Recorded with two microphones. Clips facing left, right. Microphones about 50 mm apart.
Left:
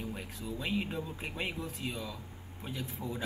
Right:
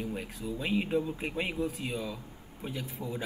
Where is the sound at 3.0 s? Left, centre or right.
Right.